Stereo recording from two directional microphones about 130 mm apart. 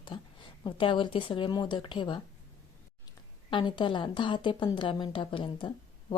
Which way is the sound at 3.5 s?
40° left (ahead or behind).